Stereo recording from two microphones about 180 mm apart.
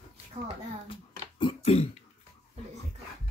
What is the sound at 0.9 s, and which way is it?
Throat clearing, 30° left (ahead or behind).